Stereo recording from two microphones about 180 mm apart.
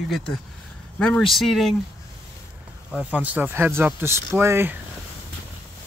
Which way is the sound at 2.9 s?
10° right (ahead or behind).